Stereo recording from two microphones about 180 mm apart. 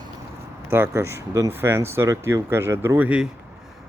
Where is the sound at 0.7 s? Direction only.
15° right (ahead or behind).